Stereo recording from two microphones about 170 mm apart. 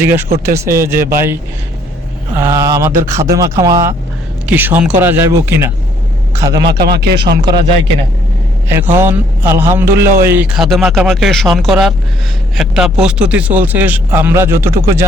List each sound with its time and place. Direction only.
0.0 s a man's voice: 10° right (ahead or behind)
2.3 s a sound: 15° right (ahead or behind)
3.0 s a man's voice: 15° right (ahead or behind)
3.3 s a sound: 20° right (ahead or behind)
4.4 s a man's voice: 10° right (ahead or behind)
6.7 s speech: 70° right (ahead or behind)
8.7 s a man's voice: 15° right (ahead or behind)